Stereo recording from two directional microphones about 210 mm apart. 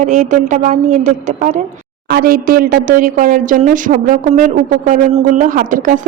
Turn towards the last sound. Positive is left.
turn(degrees=-40)  # may be behind; listen again after turning